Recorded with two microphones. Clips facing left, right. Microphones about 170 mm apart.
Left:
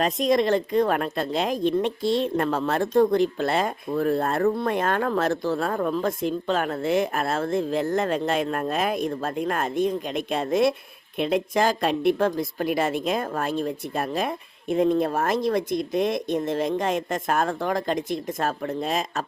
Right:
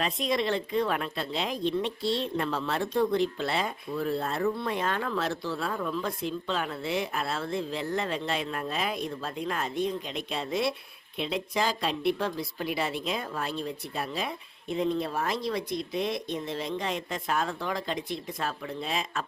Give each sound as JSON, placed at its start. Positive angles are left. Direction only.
{"t": 0.0, "sound": "speech", "side_deg": 45}